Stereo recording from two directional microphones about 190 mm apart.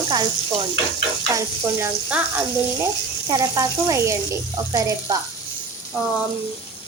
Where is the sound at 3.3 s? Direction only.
20° right (ahead or behind).